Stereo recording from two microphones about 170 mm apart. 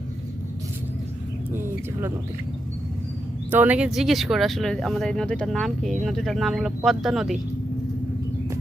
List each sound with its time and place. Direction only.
1.5 s speech: 15° right (ahead or behind)
3.4 s speech: 10° right (ahead or behind)